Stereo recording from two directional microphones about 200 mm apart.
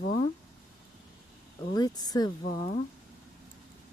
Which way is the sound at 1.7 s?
20° left (ahead or behind).